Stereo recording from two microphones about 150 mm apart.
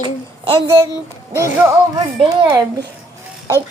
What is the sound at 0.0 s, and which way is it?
Child singing, 30° right (ahead or behind).